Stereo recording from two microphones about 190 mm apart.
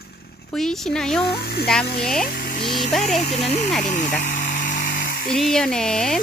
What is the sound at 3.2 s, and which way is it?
Speech, 35° left (ahead or behind).